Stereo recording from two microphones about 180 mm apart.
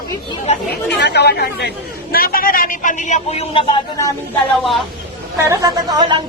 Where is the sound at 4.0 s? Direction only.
15° left (ahead or behind).